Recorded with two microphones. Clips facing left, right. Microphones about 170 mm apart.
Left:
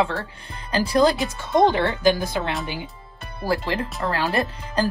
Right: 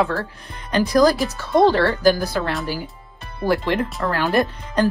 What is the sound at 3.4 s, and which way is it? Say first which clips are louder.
Speech: right 4 dB; 30° left (ahead or behind).